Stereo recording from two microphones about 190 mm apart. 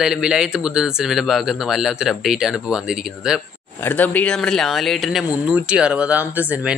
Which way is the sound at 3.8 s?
10° left (ahead or behind).